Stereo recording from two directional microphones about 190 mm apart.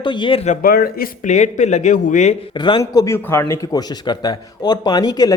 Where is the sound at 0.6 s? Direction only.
50° left (ahead or behind).